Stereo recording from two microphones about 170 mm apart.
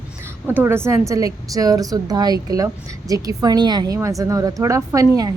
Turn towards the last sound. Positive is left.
turn(degrees=-20)  # may be behind; listen again after turning